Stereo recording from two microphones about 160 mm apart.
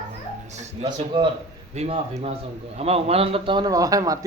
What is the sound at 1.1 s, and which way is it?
Speech, 30° right (ahead or behind).